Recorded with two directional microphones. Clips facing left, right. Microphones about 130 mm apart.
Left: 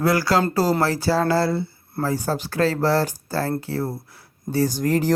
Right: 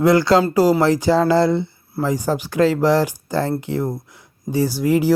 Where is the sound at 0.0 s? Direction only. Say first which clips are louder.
Right 5 dB; 20° right (ahead or behind).